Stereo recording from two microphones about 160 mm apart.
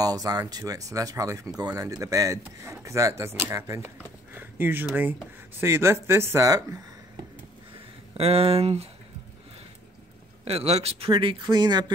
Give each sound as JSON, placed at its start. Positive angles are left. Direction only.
{"t": 0.0, "sound": "speech", "side_deg": -20}
{"t": 8.2, "sound": "a man's voice", "side_deg": -40}
{"t": 10.4, "sound": "a man's voice", "side_deg": -40}